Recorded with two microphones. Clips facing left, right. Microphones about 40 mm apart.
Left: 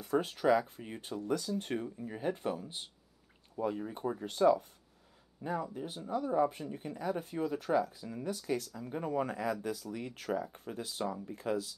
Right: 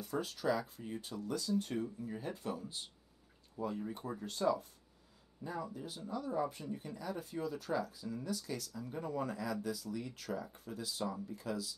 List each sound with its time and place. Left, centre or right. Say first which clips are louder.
0.0 s speech: left 6 dB; left